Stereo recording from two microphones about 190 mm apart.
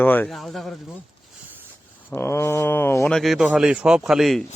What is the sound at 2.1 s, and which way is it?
A man's voice, 15° left (ahead or behind).